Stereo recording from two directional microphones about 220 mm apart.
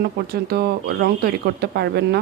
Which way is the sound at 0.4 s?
45° right (ahead or behind).